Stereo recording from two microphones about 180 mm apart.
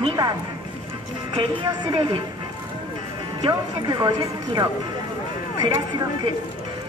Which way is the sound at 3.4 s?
25° right (ahead or behind).